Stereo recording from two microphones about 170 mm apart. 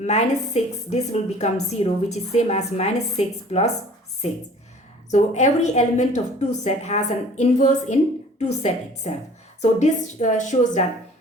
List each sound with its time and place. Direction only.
0.0 s a woman's voice: 40° left (ahead or behind)
5.1 s a woman's voice: 40° left (ahead or behind)